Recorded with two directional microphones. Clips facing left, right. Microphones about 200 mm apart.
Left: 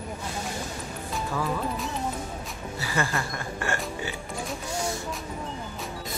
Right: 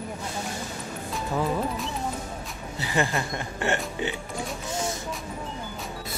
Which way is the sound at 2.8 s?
20° right (ahead or behind).